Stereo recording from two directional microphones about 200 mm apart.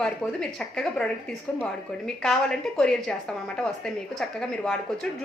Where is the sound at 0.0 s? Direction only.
5° left (ahead or behind).